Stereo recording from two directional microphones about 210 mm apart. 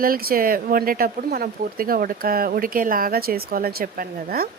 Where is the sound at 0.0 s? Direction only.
45° right (ahead or behind).